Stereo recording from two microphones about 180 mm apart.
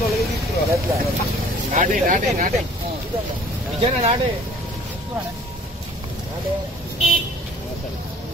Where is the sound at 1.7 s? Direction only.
50° right (ahead or behind).